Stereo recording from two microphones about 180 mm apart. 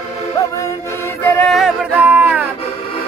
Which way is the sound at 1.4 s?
Centre (ahead or behind).